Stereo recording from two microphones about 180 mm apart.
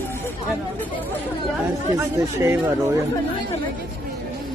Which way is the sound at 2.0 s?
15° right (ahead or behind).